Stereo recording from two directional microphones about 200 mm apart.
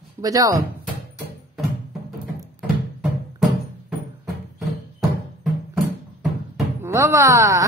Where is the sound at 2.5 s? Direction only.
Centre (ahead or behind).